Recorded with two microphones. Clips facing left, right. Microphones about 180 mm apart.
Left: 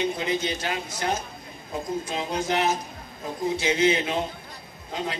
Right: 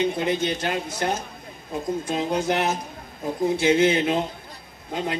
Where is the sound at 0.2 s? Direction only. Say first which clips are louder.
Right 3 dB; 55° right (ahead or behind).